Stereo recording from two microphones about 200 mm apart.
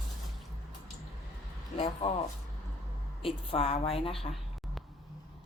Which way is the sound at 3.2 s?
30° left (ahead or behind).